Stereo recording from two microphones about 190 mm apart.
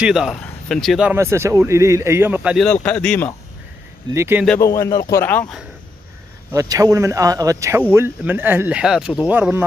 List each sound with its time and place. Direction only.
0.0 s speech: 5° right (ahead or behind)
1.1 s speech: 15° right (ahead or behind); by 3.3 s 10° left (ahead or behind)
4.1 s speech: 15° right (ahead or behind)
4.6 s speech: 15° left (ahead or behind)
6.5 s speech: 15° right (ahead or behind)